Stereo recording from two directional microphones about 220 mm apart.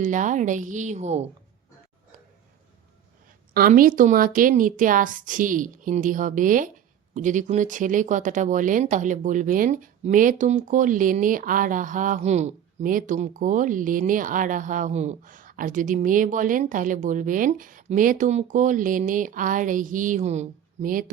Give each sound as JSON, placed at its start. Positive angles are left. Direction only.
{"t": 0.0, "sound": "speech", "side_deg": -35}
{"t": 3.5, "sound": "speech", "side_deg": -40}